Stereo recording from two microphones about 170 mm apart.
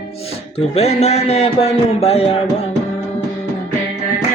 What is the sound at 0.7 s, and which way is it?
A man's voice, 40° left (ahead or behind).